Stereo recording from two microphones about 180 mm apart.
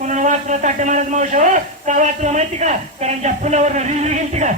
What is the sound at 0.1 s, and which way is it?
A man's voice, 45° right (ahead or behind).